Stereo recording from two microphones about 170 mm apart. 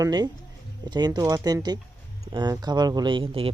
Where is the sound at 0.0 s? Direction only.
25° right (ahead or behind).